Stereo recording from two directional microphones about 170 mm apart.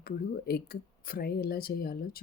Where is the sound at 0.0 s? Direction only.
65° left (ahead or behind).